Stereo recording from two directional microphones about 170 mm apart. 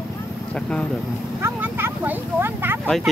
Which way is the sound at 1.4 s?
15° right (ahead or behind).